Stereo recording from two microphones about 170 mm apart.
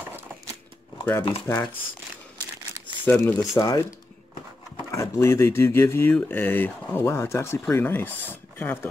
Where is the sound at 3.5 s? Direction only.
20° left (ahead or behind).